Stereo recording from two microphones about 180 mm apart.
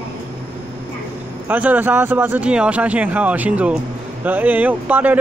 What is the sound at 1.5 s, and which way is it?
Speech, 10° right (ahead or behind).